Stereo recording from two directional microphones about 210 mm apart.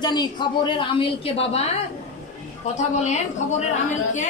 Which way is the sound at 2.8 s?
35° left (ahead or behind).